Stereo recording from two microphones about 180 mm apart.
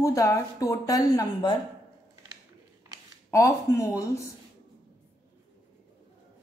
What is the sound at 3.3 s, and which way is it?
Speech, 15° left (ahead or behind).